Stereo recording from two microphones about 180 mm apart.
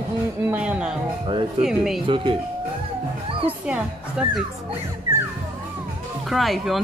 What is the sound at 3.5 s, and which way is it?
Speech, 5° right (ahead or behind).